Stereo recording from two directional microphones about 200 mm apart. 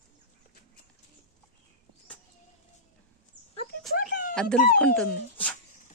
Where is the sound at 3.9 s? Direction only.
45° left (ahead or behind).